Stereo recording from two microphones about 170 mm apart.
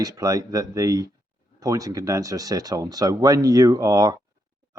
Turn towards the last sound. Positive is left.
turn(degrees=-20)  # may be behind; listen again after turning